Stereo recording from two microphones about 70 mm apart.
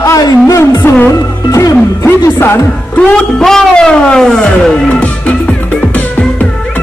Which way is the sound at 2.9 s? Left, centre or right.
Centre.